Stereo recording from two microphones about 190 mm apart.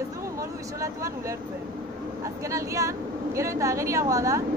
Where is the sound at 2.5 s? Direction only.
15° right (ahead or behind).